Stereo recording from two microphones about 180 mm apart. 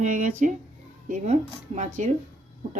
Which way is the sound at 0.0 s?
45° right (ahead or behind).